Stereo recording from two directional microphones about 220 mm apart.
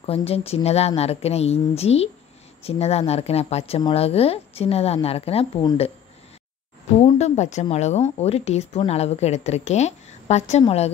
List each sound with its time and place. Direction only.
0.0 s speech: 25° left (ahead or behind)
7.0 s speech: 30° left (ahead or behind)